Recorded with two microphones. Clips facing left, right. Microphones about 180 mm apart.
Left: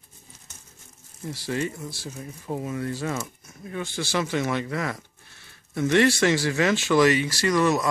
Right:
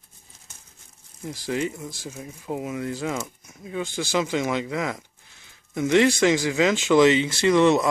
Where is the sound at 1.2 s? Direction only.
15° right (ahead or behind).